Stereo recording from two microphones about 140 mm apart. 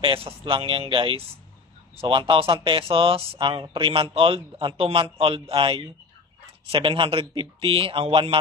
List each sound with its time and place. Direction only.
0.0 s a man's voice: 40° right (ahead or behind)